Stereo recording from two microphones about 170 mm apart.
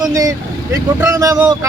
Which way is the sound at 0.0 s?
20° right (ahead or behind).